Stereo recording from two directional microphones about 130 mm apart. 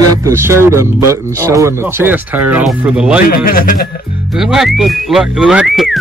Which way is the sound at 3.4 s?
90° left.